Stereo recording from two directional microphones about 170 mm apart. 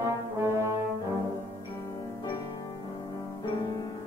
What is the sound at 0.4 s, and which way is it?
Brass instrument, 15° right (ahead or behind).